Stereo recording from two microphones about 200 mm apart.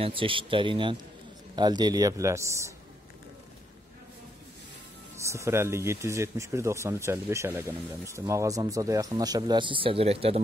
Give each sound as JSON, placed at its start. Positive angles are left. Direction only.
{"t": 0.0, "sound": "a man's voice", "side_deg": -25}
{"t": 5.2, "sound": "speech", "side_deg": -15}